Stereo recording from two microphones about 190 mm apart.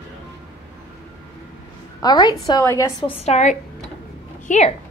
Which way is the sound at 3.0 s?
35° left (ahead or behind).